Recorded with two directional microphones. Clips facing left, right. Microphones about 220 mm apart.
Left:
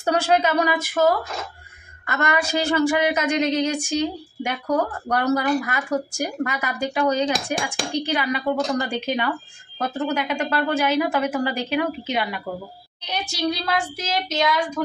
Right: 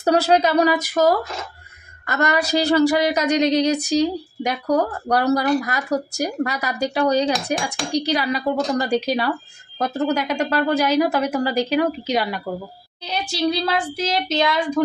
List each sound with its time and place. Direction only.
0.0 s speech: 40° right (ahead or behind)
13.5 s child singing: 30° right (ahead or behind)